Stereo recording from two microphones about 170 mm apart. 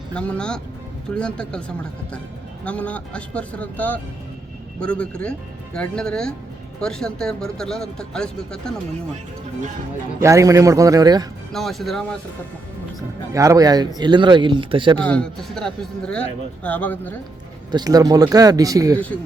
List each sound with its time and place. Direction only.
0.1 s speech: 5° left (ahead or behind)
2.6 s speech: 10° left (ahead or behind)
10.2 s speech: 20° right (ahead or behind)
11.5 s speech: centre (ahead or behind)
13.3 s speech: 20° right (ahead or behind)
14.9 s speech: 5° left (ahead or behind)
17.7 s speech: 25° right (ahead or behind)